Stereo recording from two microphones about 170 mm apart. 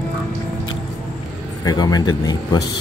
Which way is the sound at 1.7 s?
20° left (ahead or behind).